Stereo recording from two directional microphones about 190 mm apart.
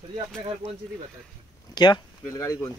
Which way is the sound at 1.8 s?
20° left (ahead or behind).